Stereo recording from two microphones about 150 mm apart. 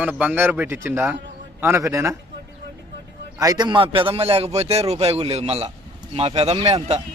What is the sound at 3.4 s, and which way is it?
Speech, 25° right (ahead or behind).